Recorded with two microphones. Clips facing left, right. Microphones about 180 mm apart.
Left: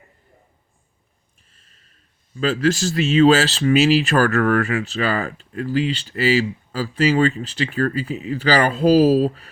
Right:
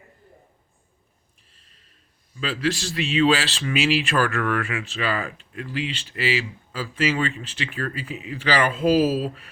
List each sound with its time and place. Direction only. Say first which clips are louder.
2.3 s speech: left 6 dB; 45° left (ahead or behind)